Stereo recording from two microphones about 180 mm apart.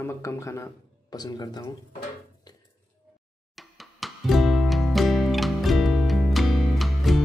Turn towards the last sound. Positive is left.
turn(degrees=0)  # may be behind; listen again after turning